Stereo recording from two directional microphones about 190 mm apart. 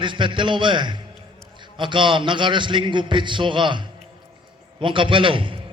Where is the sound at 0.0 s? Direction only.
25° right (ahead or behind).